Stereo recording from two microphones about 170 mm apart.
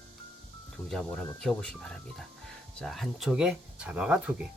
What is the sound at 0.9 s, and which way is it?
Speech, centre (ahead or behind).